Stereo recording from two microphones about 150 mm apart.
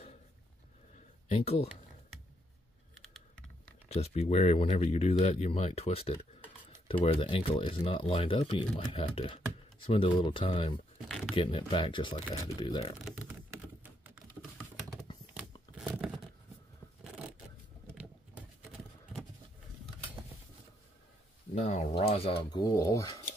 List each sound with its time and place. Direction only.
1.3 s speech: 40° left (ahead or behind)
3.9 s speech: 45° left (ahead or behind)
13.8 s typing: 10° right (ahead or behind)
15.7 s a sound: 5° right (ahead or behind)
17.9 s typing: 5° right (ahead or behind)
21.5 s speech: 50° left (ahead or behind)
22.5 s speech: 25° left (ahead or behind)